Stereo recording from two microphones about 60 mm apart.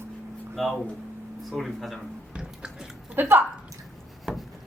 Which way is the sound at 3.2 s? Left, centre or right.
Right.